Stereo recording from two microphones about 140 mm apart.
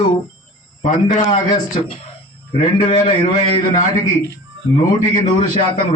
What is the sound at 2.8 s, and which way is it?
Speech, 45° left (ahead or behind).